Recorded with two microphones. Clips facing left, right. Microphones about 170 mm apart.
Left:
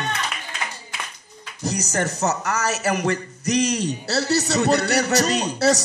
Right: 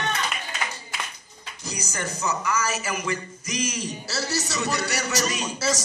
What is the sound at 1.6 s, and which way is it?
Speech, 70° left (ahead or behind).